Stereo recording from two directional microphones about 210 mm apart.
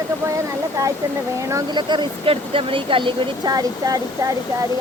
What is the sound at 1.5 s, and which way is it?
Speech, 20° right (ahead or behind).